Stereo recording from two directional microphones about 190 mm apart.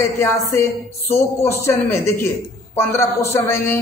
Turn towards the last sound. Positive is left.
turn(degrees=10)  # may be behind; listen again after turning